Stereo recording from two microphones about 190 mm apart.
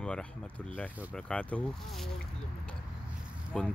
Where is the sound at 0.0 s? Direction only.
5° left (ahead or behind).